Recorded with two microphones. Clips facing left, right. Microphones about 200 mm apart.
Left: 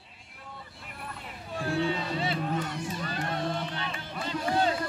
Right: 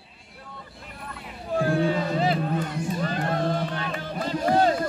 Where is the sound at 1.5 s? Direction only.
50° right (ahead or behind).